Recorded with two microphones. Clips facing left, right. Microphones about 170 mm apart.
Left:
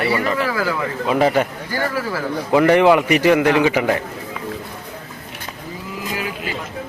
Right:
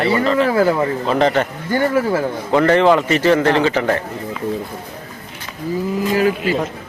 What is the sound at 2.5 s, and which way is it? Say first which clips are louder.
A man's voice: even; 10° left (ahead or behind).